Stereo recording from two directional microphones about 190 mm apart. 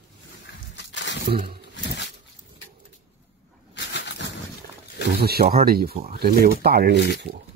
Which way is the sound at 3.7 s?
65° left (ahead or behind).